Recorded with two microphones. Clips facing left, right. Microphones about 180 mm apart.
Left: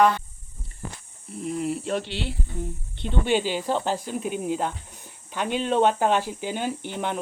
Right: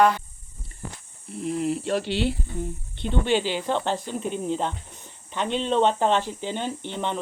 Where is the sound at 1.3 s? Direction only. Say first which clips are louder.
Right 2 dB; centre (ahead or behind).